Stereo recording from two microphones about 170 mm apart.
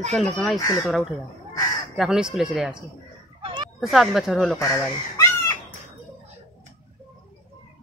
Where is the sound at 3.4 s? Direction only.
30° right (ahead or behind).